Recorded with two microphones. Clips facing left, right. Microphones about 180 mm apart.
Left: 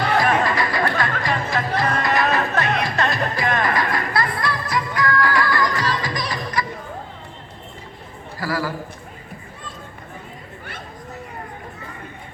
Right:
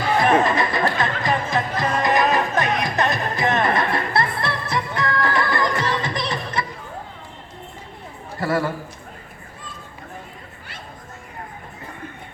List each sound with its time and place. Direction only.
0.2 s music: 20° right (ahead or behind)
8.4 s a man's voice: 25° right (ahead or behind)